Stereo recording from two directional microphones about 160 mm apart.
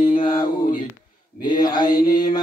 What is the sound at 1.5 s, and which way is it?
Mantra, 25° left (ahead or behind).